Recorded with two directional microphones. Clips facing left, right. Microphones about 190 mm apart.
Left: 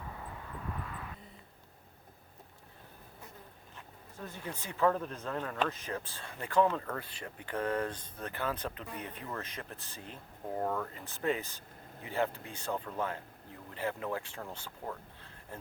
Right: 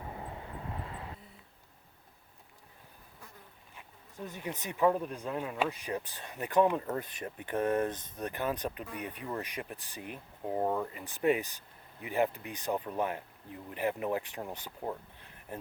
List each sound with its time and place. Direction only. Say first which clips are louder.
0.0 s vehicle: right 3 dB; 25° right (ahead or behind)
3.8 s speech: right 2 dB; 15° right (ahead or behind)